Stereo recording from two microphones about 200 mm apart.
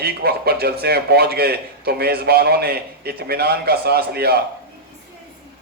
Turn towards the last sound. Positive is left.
turn(degrees=-50)  # may be behind; listen again after turning